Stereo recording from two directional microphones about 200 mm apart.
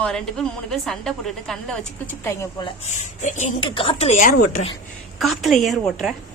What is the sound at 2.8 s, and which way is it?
Speech, 35° left (ahead or behind).